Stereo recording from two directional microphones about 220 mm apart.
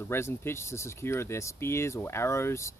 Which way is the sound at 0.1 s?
10° left (ahead or behind).